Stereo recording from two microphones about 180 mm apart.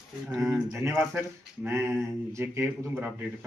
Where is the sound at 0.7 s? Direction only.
15° right (ahead or behind).